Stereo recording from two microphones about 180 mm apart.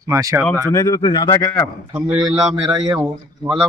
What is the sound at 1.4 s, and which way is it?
Speech, 10° left (ahead or behind).